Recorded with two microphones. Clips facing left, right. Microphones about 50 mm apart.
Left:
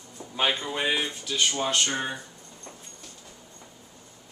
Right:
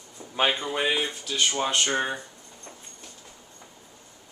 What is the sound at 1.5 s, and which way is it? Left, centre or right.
Speech, centre.